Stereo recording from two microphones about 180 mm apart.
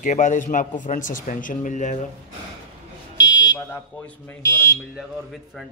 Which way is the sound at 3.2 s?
20° left (ahead or behind).